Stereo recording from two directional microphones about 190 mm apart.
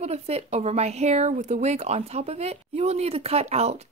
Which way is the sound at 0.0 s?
35° right (ahead or behind).